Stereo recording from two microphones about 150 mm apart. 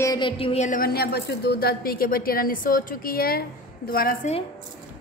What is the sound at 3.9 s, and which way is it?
Speech, 70° left (ahead or behind).